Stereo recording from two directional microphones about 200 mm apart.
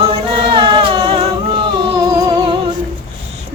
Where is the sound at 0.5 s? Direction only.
25° right (ahead or behind).